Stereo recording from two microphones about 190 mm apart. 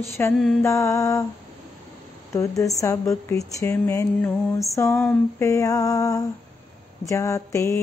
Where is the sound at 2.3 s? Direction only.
15° left (ahead or behind).